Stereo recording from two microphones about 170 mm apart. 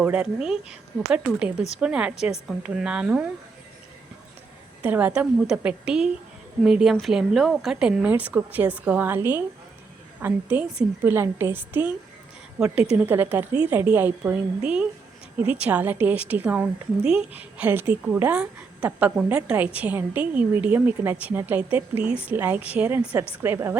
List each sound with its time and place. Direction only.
0.0 s a woman's voice: 10° right (ahead or behind)
4.8 s a woman's voice: 10° right (ahead or behind)
21.9 s speech: 35° left (ahead or behind)
22.3 s a woman's voice: 10° right (ahead or behind)